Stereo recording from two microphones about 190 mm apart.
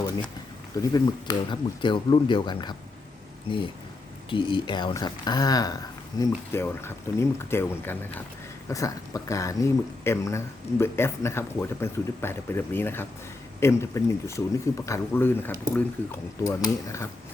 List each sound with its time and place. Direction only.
0.8 s speech: 20° left (ahead or behind)